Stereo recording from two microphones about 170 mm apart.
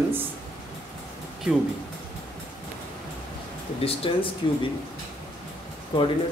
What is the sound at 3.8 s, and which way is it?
Speech, 35° left (ahead or behind).